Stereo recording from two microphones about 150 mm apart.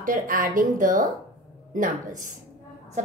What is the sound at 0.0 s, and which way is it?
A woman's voice, 65° right (ahead or behind).